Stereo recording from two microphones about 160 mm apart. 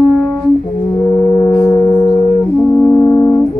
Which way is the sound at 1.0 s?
15° left (ahead or behind).